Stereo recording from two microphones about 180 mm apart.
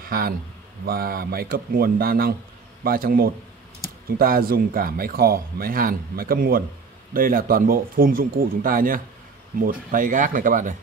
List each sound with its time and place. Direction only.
0.0 s a man's voice: 55° right (ahead or behind)